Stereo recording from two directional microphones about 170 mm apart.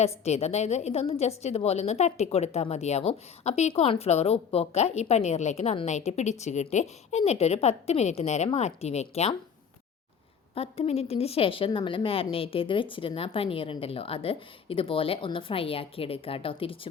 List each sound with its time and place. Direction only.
0.3 s speech: 40° left (ahead or behind)
10.5 s speech: 35° left (ahead or behind)